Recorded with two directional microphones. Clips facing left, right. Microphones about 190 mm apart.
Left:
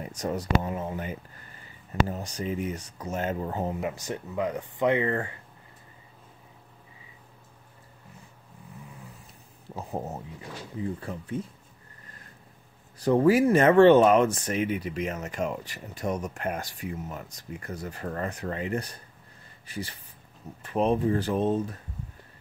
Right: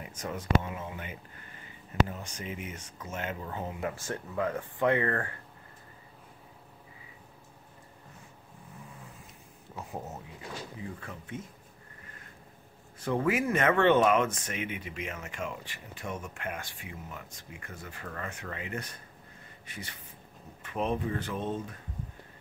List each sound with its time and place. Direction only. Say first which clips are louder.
0.2 s speech: left 3 dB; 35° left (ahead or behind)
4.0 s speech: left 2 dB; 15° left (ahead or behind)
9.8 s speech: left 6 dB; 35° left (ahead or behind)
13.0 s speech: left 8 dB; 35° left (ahead or behind)